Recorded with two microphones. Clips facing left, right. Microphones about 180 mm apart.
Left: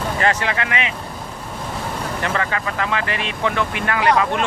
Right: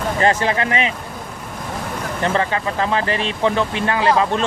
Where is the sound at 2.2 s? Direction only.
30° right (ahead or behind).